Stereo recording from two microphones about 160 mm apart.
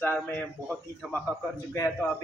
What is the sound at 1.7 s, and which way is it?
Speech, 20° left (ahead or behind).